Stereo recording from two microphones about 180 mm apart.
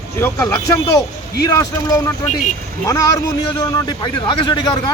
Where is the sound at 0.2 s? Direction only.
15° left (ahead or behind).